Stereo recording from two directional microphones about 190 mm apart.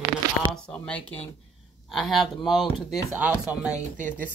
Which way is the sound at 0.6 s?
5° left (ahead or behind).